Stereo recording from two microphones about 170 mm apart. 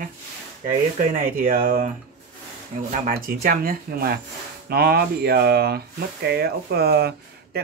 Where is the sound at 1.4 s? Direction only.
55° right (ahead or behind).